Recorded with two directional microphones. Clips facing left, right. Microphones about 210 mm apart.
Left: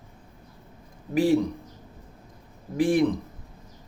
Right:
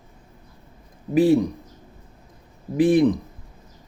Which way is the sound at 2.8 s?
20° right (ahead or behind).